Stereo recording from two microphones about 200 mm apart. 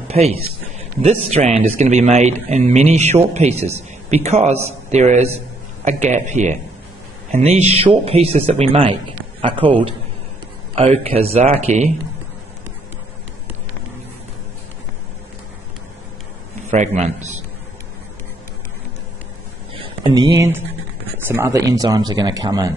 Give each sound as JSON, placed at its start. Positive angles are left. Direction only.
{"t": 0.1, "sound": "speech", "side_deg": -30}
{"t": 16.7, "sound": "speech", "side_deg": -35}
{"t": 19.7, "sound": "a sound", "side_deg": -25}
{"t": 21.3, "sound": "speech", "side_deg": -15}